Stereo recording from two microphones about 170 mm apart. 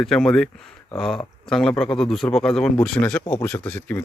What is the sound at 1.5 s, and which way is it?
A man's voice, centre (ahead or behind).